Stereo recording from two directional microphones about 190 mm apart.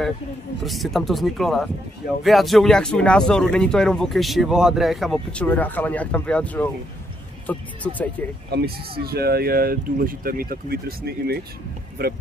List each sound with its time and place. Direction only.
0.7 s a man's voice: centre (ahead or behind)
8.5 s speech: 55° right (ahead or behind)